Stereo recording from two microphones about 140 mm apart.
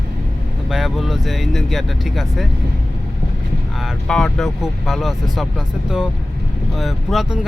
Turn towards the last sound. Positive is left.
turn(degrees=0)  # may be behind; listen again after turning